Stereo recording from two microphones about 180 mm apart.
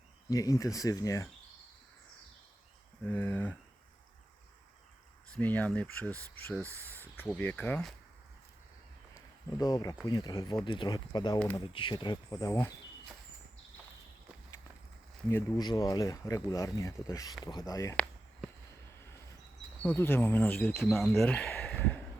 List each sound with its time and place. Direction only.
0.3 s speech: 20° left (ahead or behind)
3.0 s speech: 10° left (ahead or behind)
5.3 s speech: 10° left (ahead or behind)
9.6 s speech: 20° left (ahead or behind)
15.3 s speech: 20° left (ahead or behind)
19.8 s speech: 10° left (ahead or behind)